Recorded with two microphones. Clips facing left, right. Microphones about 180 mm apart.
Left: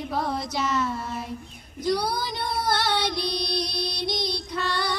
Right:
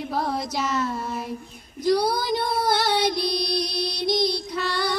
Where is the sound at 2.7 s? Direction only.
15° right (ahead or behind).